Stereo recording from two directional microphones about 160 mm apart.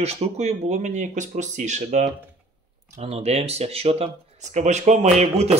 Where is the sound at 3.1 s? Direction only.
40° right (ahead or behind).